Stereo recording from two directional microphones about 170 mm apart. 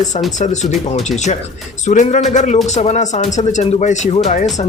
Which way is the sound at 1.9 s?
45° left (ahead or behind).